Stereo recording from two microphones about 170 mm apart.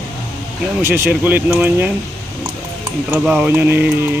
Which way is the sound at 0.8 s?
15° right (ahead or behind).